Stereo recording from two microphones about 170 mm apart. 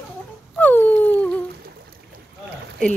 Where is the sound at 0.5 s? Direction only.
10° left (ahead or behind).